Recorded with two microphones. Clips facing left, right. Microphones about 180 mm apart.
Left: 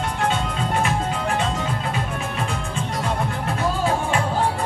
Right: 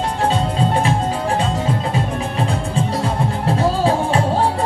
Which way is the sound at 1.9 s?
30° right (ahead or behind).